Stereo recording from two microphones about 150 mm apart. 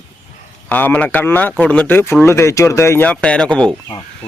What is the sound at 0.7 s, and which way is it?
A man's voice, 10° left (ahead or behind).